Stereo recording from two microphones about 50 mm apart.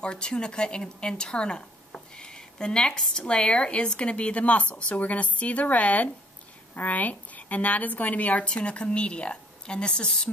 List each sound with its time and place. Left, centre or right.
0.0 s speech: centre